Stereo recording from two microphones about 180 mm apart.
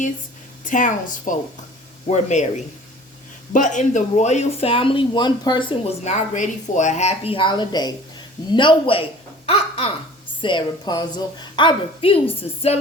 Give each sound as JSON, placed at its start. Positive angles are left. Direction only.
{"t": 0.6, "sound": "a woman's voice", "side_deg": 45}
{"t": 3.5, "sound": "speech", "side_deg": 45}
{"t": 6.1, "sound": "a woman's voice", "side_deg": 40}
{"t": 9.5, "sound": "a sound", "side_deg": 30}
{"t": 10.4, "sound": "a woman's voice", "side_deg": 25}